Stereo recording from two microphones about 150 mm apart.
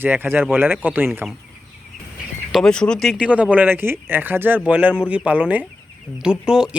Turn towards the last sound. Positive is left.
turn(degrees=-5)  # may be behind; listen again after turning